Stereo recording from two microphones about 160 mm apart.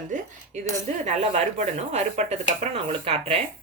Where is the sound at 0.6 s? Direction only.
45° right (ahead or behind).